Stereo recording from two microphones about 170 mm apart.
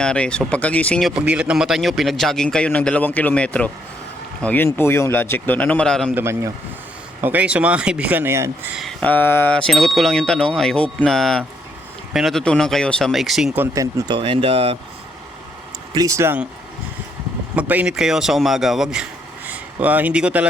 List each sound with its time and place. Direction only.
0.0 s a man's voice: 5° left (ahead or behind)
6.1 s speech: 15° right (ahead or behind)
8.7 s speech: centre (ahead or behind)
14.1 s speech: 30° right (ahead or behind)
16.0 s speech: 20° right (ahead or behind)
17.5 s speech: 10° right (ahead or behind)